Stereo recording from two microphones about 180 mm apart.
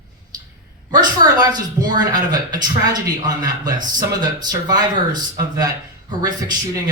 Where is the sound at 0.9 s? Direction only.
20° right (ahead or behind).